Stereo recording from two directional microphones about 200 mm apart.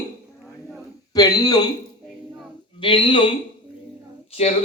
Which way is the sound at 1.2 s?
20° left (ahead or behind).